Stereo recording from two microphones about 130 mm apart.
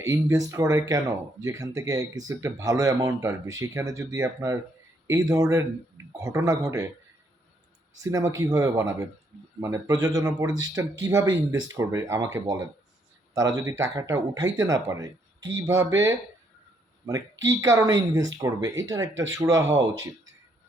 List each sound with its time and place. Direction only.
0.0 s speech: 25° right (ahead or behind)
8.0 s speech: 25° right (ahead or behind)